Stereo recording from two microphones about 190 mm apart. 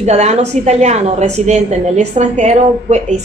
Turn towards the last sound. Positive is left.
turn(degrees=-35)  # may be behind; listen again after turning